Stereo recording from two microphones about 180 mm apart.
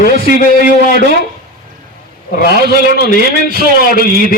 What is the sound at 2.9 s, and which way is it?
A man's voice, 65° left (ahead or behind).